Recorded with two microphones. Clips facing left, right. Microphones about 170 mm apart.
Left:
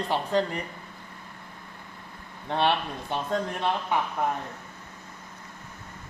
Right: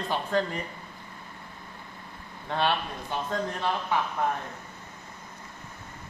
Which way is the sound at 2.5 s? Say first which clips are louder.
Left 2 dB; 25° left (ahead or behind).